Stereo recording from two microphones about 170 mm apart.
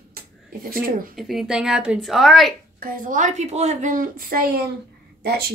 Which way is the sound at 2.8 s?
55° right (ahead or behind).